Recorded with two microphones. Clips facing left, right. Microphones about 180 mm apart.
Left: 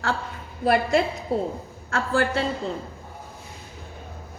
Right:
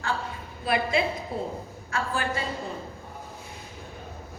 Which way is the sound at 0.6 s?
50° left (ahead or behind).